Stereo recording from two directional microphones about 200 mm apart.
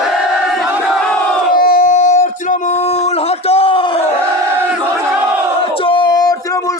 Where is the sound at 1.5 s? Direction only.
45° left (ahead or behind); by 4.1 s 25° left (ahead or behind).